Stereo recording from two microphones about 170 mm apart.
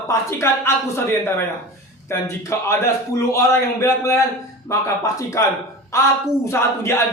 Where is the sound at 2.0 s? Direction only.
15° left (ahead or behind).